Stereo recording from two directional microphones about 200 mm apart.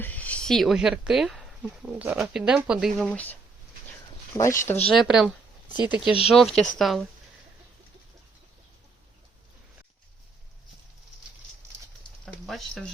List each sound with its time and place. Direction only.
0.0 s speech: 5° left (ahead or behind)
4.4 s speech: 15° left (ahead or behind)
4.9 s speech: centre (ahead or behind)
5.6 s speech: 20° left (ahead or behind)
6.2 s speech: centre (ahead or behind)
12.2 s a sound: centre (ahead or behind)